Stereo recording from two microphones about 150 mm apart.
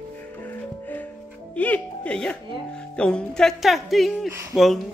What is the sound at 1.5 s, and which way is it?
Speech, 10° left (ahead or behind).